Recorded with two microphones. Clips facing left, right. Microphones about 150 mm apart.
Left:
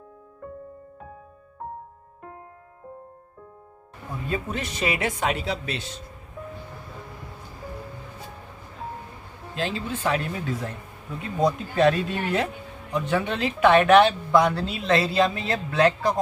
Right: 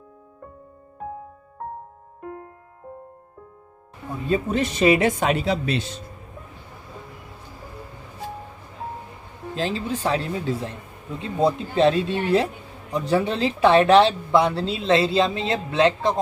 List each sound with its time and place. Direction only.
4.3 s speech: 30° right (ahead or behind)
9.6 s speech: 35° right (ahead or behind)